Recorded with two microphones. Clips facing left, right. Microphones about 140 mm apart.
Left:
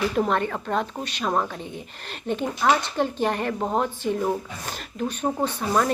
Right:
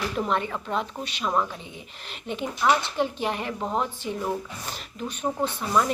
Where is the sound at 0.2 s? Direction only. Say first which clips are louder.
Left 1 dB; 50° left (ahead or behind).